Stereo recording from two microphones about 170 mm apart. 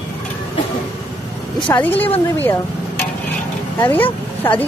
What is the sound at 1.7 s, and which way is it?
Speech, 10° left (ahead or behind).